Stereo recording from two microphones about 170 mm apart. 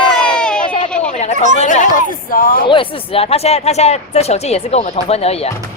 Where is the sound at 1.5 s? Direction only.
45° left (ahead or behind).